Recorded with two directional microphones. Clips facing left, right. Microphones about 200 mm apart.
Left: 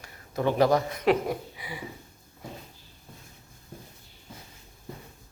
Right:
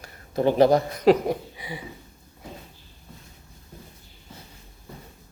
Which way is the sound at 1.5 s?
25° right (ahead or behind).